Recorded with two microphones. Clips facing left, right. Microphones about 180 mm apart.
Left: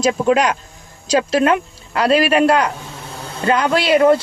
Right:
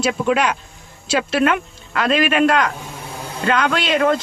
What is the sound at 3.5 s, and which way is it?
Speech, 35° left (ahead or behind).